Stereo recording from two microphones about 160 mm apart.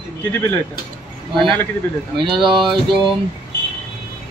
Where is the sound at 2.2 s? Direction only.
30° right (ahead or behind).